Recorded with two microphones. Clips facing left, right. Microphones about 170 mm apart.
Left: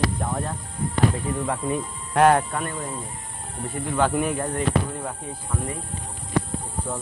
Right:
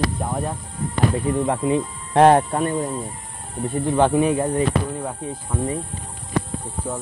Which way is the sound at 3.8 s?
25° right (ahead or behind).